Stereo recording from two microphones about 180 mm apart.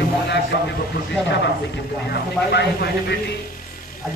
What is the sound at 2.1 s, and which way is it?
Speech, 65° left (ahead or behind).